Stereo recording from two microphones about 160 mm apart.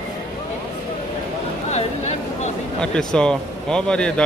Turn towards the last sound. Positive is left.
turn(degrees=5)  # may be behind; listen again after turning